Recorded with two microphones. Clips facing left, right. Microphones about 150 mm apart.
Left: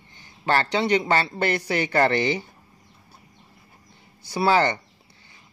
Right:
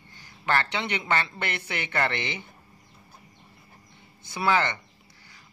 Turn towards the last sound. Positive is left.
turn(degrees=35)  # may be behind; listen again after turning